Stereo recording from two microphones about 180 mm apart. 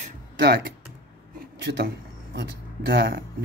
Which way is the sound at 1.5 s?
75° right (ahead or behind).